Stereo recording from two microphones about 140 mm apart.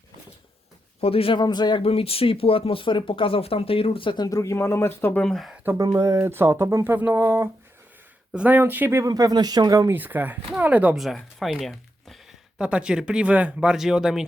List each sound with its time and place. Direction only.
1.0 s speech: 40° left (ahead or behind); by 5.2 s 15° left (ahead or behind)
5.2 s speech: centre (ahead or behind)
5.6 s speech: 25° right (ahead or behind)
9.9 s speech: 15° right (ahead or behind)